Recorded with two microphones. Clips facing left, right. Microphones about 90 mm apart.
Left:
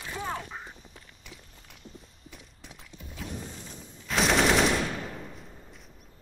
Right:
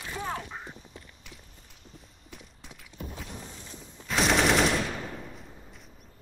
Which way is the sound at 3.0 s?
50° right (ahead or behind).